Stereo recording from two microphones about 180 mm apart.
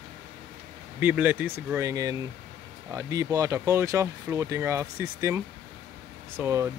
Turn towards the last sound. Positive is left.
turn(degrees=-15)  # may be behind; listen again after turning